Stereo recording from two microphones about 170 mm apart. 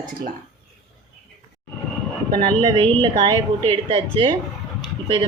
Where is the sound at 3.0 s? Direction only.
30° right (ahead or behind).